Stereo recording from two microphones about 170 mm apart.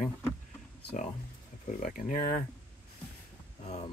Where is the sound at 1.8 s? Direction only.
50° left (ahead or behind).